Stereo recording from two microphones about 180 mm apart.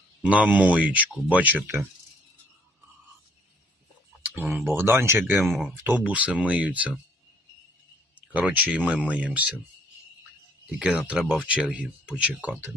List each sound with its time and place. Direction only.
0.2 s speech: 5° right (ahead or behind)
4.7 s speech: 10° right (ahead or behind)
8.3 s speech: 10° right (ahead or behind)
10.8 s speech: 5° right (ahead or behind)